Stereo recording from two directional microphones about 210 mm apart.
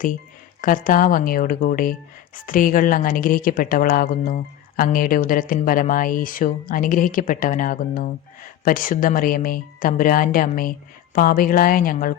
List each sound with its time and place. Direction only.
0.6 s speech: 40° left (ahead or behind)